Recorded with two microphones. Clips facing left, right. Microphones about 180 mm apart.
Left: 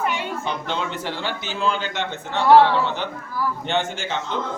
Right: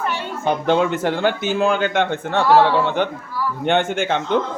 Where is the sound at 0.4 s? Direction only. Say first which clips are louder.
Right 9 dB; 50° right (ahead or behind).